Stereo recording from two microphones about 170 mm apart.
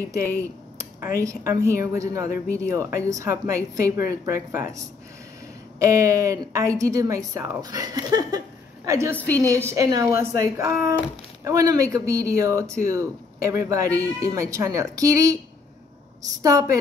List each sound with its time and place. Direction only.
0.0 s speech: 15° right (ahead or behind)
5.8 s a woman's voice: 20° right (ahead or behind)
9.1 s a woman's voice: 10° left (ahead or behind)
9.4 s speech: 15° right (ahead or behind)